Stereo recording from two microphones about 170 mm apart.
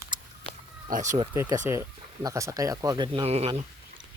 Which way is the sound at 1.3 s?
20° right (ahead or behind).